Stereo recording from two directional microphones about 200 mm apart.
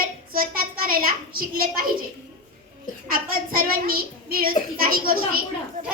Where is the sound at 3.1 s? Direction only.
45° right (ahead or behind).